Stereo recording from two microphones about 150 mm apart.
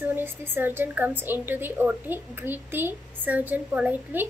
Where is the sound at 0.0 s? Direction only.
15° right (ahead or behind).